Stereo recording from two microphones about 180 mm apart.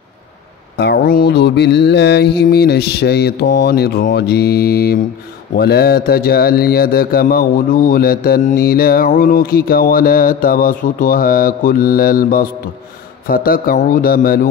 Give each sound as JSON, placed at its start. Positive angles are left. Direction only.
{"t": 0.7, "sound": "a man's voice", "side_deg": 60}